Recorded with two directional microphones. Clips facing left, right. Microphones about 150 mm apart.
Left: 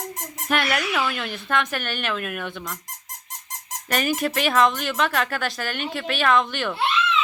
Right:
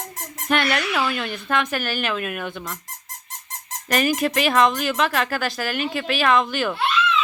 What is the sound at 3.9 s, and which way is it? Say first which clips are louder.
Speech: right 3 dB; centre (ahead or behind).